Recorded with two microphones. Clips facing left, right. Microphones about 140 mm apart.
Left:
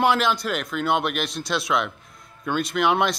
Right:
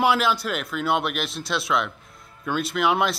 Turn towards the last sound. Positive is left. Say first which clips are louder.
# left 1 dB
turn(degrees=-5)  # may be behind; listen again after turning